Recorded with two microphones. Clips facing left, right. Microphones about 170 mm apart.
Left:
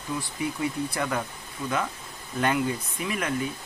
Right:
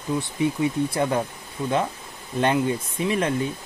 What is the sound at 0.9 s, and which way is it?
Speech, 25° right (ahead or behind).